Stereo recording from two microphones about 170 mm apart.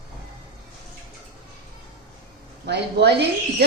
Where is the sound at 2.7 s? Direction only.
80° right.